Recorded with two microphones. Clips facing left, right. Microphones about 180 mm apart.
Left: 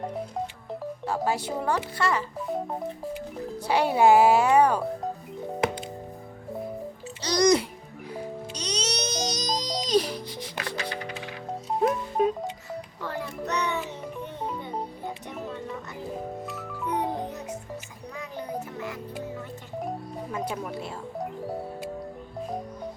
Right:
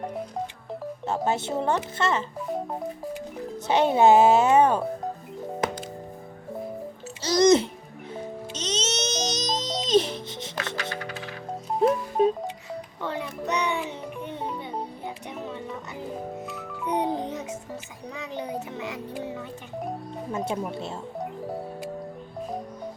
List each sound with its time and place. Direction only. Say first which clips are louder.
1.0 s a woman's voice: right 1 dB; 20° right (ahead or behind)
3.7 s a woman's voice: right 2 dB; 20° right (ahead or behind)
7.2 s a child's voice: right 3 dB; 25° right (ahead or behind)
8.1 s music: even; 25° right (ahead or behind)
10.8 s music: even; 20° left (ahead or behind)
12.2 s music: right 1 dB; 25° right (ahead or behind)
16.8 s music: right 3 dB; 20° right (ahead or behind)
18.3 s music: right 1 dB; 20° right (ahead or behind)
20.3 s music: right 3 dB; 25° right (ahead or behind)
20.7 s a woman's voice: right 1 dB; 25° right (ahead or behind)
21.2 s music: left 1 dB; centre (ahead or behind)